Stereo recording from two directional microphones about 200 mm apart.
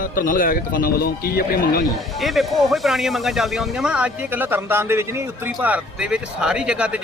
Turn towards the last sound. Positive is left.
turn(degrees=-5)  # may be behind; listen again after turning